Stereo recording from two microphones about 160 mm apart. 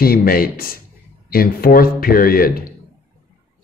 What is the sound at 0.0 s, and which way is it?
A man's voice, 65° left (ahead or behind).